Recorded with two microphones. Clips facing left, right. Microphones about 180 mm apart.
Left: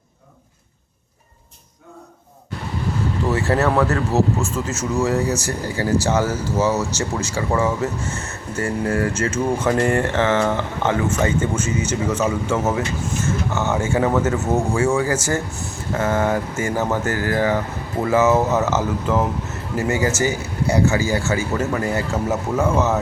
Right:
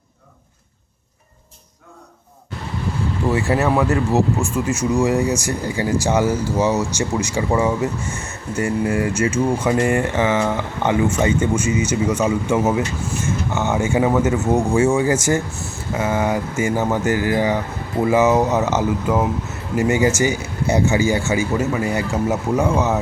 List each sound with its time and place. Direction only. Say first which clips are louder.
3.2 s speech: right 1 dB; 10° right (ahead or behind)